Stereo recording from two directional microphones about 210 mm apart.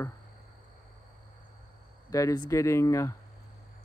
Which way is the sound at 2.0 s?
15° left (ahead or behind).